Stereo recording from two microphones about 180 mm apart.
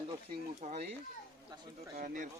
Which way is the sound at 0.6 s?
40° right (ahead or behind).